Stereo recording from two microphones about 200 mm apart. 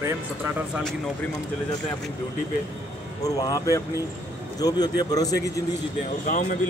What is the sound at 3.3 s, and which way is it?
A man's voice, 20° left (ahead or behind).